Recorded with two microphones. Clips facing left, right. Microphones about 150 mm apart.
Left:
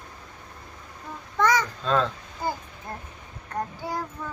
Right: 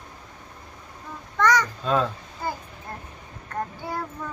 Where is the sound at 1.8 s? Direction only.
10° right (ahead or behind).